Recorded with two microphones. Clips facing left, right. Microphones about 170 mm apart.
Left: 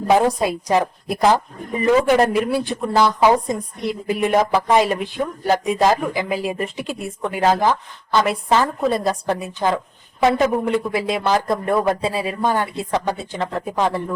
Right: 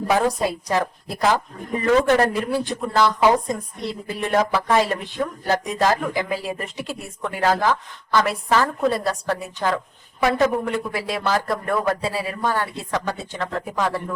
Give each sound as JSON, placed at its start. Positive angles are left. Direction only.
{"t": 0.1, "sound": "speech", "side_deg": 15}